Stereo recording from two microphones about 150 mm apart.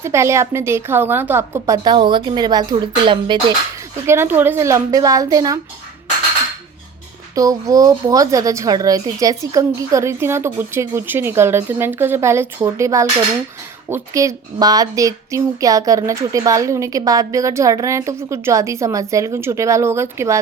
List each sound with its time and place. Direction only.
0.0 s a woman's voice: 20° right (ahead or behind)
4.0 s a woman's voice: 15° right (ahead or behind)
7.3 s a woman's voice: 25° right (ahead or behind)